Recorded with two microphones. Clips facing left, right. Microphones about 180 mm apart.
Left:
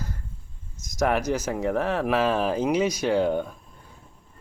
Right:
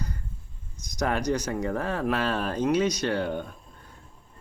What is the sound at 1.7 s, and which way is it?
Speech, 90° left.